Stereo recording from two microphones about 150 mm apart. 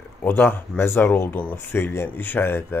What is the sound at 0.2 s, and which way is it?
Speech, 15° left (ahead or behind).